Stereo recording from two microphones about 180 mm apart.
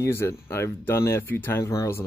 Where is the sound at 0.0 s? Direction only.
15° left (ahead or behind).